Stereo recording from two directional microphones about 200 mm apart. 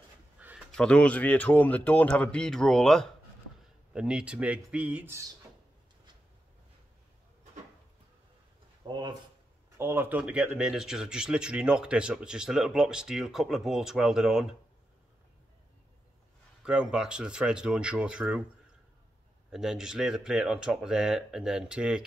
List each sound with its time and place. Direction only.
0.4 s a sound: 5° right (ahead or behind)
0.7 s speech: 5° left (ahead or behind)
8.8 s speech: 20° right (ahead or behind)
9.8 s speech: 10° right (ahead or behind)
16.6 s speech: 5° right (ahead or behind)
19.5 s speech: centre (ahead or behind)